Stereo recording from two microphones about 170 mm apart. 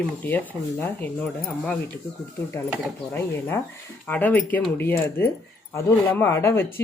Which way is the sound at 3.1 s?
15° left (ahead or behind).